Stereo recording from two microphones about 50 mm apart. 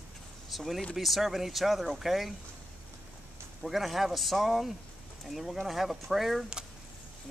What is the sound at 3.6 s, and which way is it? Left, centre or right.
Speech, centre.